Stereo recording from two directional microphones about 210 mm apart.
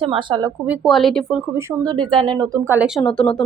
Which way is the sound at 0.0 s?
25° right (ahead or behind).